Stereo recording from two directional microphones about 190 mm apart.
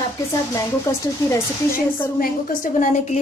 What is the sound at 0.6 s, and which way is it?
Speech, 15° left (ahead or behind).